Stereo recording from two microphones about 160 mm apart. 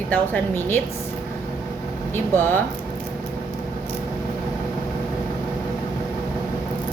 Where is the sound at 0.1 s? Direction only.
15° left (ahead or behind).